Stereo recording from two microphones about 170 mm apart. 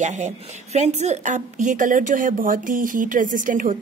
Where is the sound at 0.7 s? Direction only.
40° right (ahead or behind).